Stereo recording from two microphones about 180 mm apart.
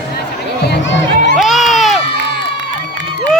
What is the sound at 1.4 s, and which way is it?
Crowd, centre (ahead or behind).